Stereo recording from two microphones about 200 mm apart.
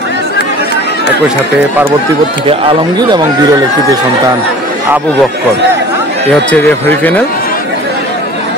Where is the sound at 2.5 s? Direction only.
25° right (ahead or behind).